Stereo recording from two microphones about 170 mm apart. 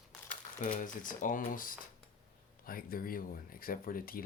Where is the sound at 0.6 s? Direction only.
50° left (ahead or behind).